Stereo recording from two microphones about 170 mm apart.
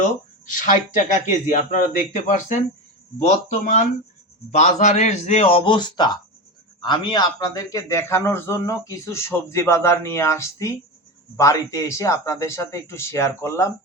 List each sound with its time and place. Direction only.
0.0 s a man's voice: 50° left (ahead or behind); by 13.7 s 15° left (ahead or behind)